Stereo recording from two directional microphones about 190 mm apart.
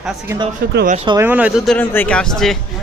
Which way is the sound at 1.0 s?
15° right (ahead or behind).